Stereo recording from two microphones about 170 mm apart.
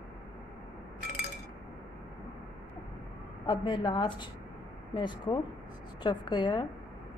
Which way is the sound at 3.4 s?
25° left (ahead or behind).